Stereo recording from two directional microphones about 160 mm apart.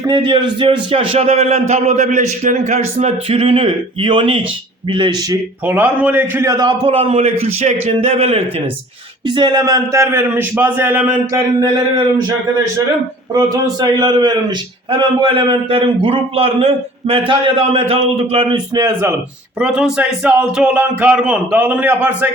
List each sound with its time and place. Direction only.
0.0 s a man's voice: 25° right (ahead or behind); by 2.8 s 50° right (ahead or behind)
3.0 s a man's voice: 40° right (ahead or behind)
5.6 s a man's voice: 10° right (ahead or behind)
11.6 s a man's voice: 30° right (ahead or behind)
13.3 s a man's voice: 25° right (ahead or behind)
19.5 s speech: 5° right (ahead or behind)